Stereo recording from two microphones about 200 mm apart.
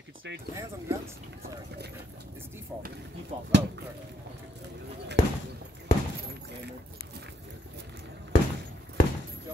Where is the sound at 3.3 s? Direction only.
35° right (ahead or behind).